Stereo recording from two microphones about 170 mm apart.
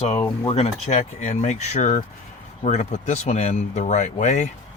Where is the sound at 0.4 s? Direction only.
40° left (ahead or behind).